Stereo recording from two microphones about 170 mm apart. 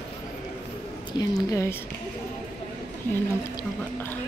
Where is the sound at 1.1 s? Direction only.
20° left (ahead or behind).